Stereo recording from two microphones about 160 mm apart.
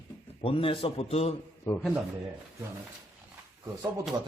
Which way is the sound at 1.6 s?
15° left (ahead or behind).